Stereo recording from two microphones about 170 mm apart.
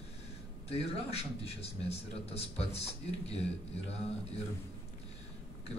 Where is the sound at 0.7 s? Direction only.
35° left (ahead or behind).